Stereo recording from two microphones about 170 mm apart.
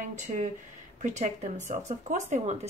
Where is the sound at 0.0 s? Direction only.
45° right (ahead or behind).